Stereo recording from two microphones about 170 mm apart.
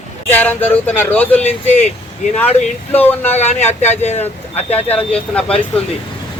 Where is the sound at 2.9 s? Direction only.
10° left (ahead or behind).